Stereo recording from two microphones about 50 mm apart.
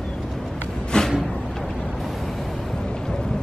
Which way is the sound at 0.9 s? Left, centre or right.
Centre.